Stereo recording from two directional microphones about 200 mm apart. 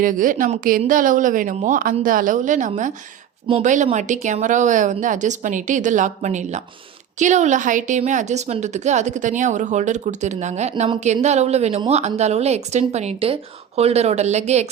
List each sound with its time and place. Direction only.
0.0 s a woman's voice: 40° right (ahead or behind)